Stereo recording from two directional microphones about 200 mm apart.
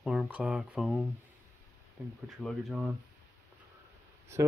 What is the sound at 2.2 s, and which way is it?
Speech, centre (ahead or behind).